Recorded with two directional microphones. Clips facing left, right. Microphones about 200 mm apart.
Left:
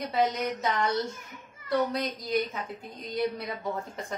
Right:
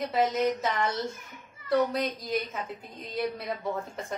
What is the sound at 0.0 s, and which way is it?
A woman's voice, centre (ahead or behind).